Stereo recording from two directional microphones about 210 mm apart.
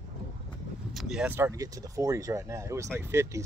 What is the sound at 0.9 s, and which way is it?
Speech, 5° right (ahead or behind).